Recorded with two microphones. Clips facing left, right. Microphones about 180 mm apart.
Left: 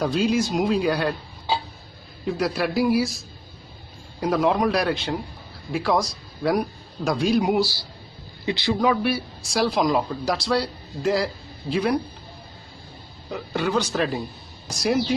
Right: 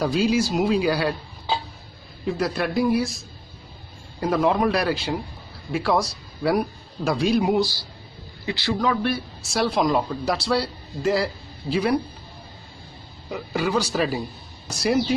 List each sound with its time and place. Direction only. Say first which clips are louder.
0.0 s speech: right 1 dB; centre (ahead or behind)
2.2 s speech: even; centre (ahead or behind)
8.5 s speech: left 2 dB; 15° left (ahead or behind)
9.1 s speech: left 1 dB; centre (ahead or behind)
13.3 s a man's voice: even; 5° right (ahead or behind)